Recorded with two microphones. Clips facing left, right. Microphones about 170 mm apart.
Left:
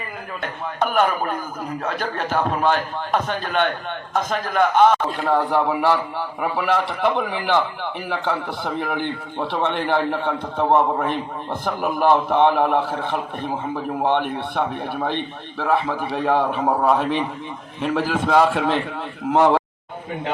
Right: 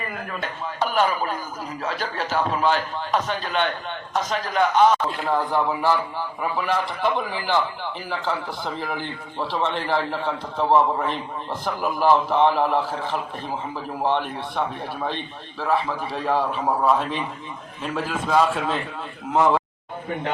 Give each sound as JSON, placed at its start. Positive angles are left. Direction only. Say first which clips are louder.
{"t": 0.4, "sound": "a man's voice", "louder": "left 4 dB", "side_deg": 55}
{"t": 5.5, "sound": "a man's voice", "louder": "left 3 dB", "side_deg": 70}